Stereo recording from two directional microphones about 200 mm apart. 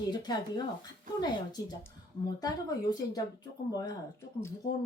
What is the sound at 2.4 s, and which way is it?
Speech, 20° left (ahead or behind).